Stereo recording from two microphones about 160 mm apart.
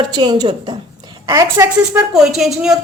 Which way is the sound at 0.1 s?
25° right (ahead or behind).